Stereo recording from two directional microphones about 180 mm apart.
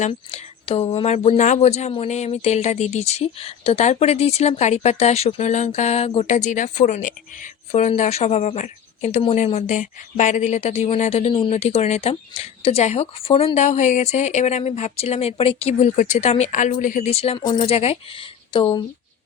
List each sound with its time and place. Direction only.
0.0 s speech: 35° left (ahead or behind)